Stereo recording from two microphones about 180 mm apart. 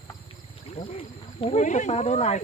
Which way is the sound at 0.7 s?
30° left (ahead or behind).